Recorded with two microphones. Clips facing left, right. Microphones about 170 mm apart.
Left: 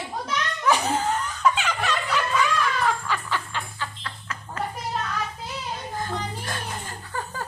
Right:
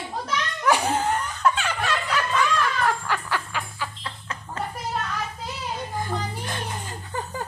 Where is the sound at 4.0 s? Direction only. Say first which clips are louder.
Right 1 dB; 25° right (ahead or behind).